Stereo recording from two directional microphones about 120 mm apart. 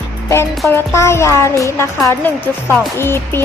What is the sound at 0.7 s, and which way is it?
A woman's voice, 20° left (ahead or behind).